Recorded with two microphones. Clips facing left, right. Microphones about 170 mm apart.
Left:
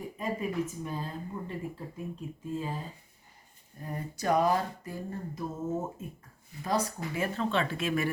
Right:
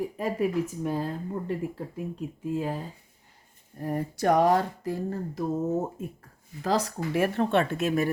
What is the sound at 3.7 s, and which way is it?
Speech, 70° right (ahead or behind).